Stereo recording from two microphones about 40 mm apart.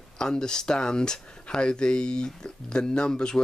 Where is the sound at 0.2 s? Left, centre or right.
Centre.